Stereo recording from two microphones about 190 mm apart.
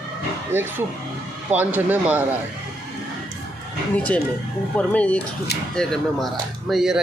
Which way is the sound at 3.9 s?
10° left (ahead or behind).